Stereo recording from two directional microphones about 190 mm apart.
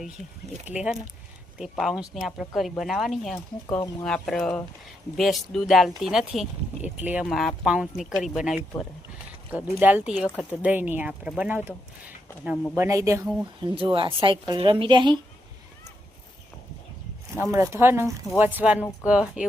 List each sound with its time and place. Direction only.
0.7 s speech: 5° right (ahead or behind)
10.2 s speech: 10° left (ahead or behind)
10.6 s speech: 10° right (ahead or behind)
12.7 s speech: 15° right (ahead or behind)
13.2 s speech: centre (ahead or behind)
13.7 s a woman's voice: 25° right (ahead or behind)
17.3 s speech: 15° right (ahead or behind)